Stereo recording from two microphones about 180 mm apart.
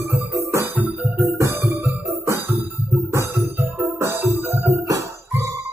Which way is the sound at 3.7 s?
15° right (ahead or behind).